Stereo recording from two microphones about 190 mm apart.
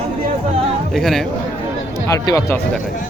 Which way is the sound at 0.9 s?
Centre (ahead or behind).